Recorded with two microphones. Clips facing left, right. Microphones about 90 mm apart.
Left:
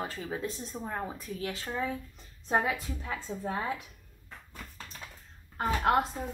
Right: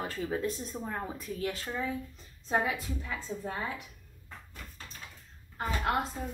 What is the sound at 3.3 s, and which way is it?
Speech, 20° left (ahead or behind).